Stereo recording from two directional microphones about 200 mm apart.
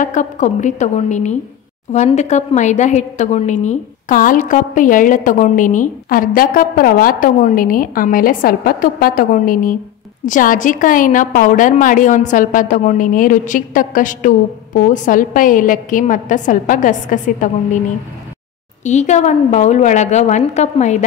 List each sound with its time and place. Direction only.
0.0 s a woman's voice: 40° left (ahead or behind)
18.9 s a woman's voice: 35° left (ahead or behind)